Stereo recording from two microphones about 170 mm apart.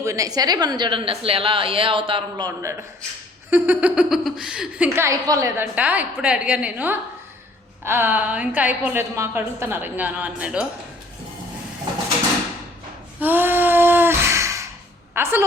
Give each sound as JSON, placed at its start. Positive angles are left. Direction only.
{"t": 0.0, "sound": "a woman's voice", "side_deg": -20}
{"t": 3.5, "sound": "speech", "side_deg": -10}
{"t": 13.1, "sound": "a sound", "side_deg": -10}
{"t": 15.1, "sound": "a woman's voice", "side_deg": -15}